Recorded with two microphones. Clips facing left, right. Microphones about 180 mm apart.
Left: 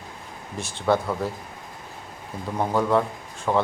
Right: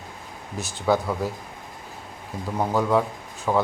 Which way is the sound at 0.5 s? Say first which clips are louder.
Even; centre (ahead or behind).